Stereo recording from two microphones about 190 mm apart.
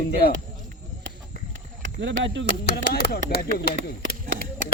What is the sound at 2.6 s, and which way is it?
Speech, 55° left (ahead or behind).